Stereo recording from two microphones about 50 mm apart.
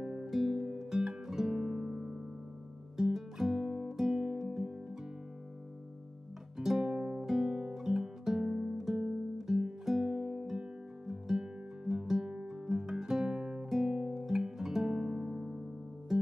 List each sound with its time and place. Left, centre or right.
0.0 s music: centre
0.3 s music: centre
3.0 s guitar: centre
6.6 s music: centre
7.2 s guitar: centre
14.0 s music: centre